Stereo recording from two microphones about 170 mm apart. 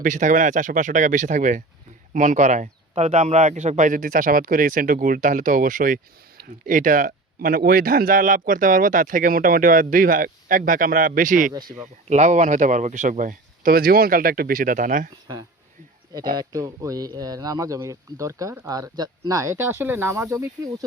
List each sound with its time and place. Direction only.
0.0 s a man's voice: 50° right (ahead or behind)
16.1 s speech: 25° right (ahead or behind)